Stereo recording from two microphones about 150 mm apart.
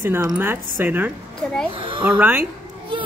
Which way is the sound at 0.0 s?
10° right (ahead or behind).